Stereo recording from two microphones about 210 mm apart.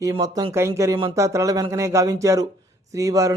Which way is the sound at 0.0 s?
20° right (ahead or behind).